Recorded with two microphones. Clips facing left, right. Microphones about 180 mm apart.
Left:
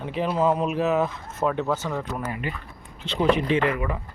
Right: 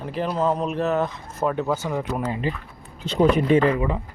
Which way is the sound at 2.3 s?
25° right (ahead or behind).